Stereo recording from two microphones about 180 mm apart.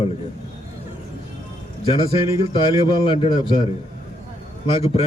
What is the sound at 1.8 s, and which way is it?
A man's voice, 30° left (ahead or behind).